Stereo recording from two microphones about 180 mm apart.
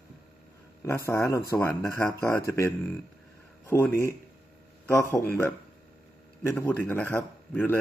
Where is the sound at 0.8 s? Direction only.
15° left (ahead or behind).